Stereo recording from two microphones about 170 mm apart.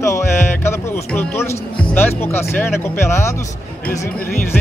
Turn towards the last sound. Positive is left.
turn(degrees=15)  # may be behind; listen again after turning